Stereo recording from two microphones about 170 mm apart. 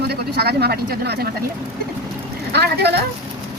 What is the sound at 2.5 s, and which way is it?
Speech, 75° right (ahead or behind).